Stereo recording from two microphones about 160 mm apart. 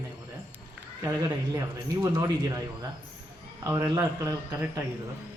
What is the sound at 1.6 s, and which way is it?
A man's voice, 20° right (ahead or behind).